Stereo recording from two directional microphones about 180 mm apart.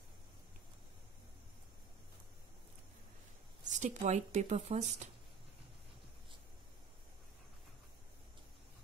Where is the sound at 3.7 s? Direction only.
40° right (ahead or behind).